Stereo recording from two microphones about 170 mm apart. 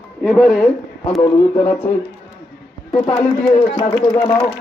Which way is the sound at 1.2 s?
25° left (ahead or behind).